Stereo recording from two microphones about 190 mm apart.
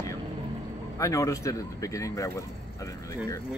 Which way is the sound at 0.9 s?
15° left (ahead or behind).